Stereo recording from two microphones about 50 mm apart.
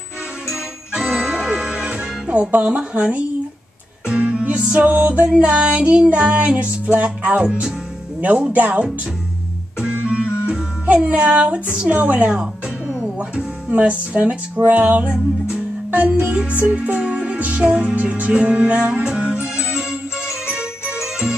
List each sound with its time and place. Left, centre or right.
0.5 s music: centre; by 8.8 s right
9.8 s music: centre
16.1 s music: centre
17.0 s music: centre
17.4 s music: right
17.6 s music: centre
17.9 s music: right; by 21.4 s centre